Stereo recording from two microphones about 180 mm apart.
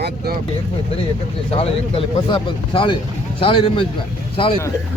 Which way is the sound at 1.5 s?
30° left (ahead or behind).